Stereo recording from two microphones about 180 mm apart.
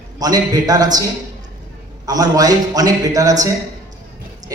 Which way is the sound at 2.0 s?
20° right (ahead or behind).